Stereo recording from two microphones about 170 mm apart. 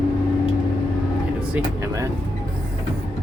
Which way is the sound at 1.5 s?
15° right (ahead or behind).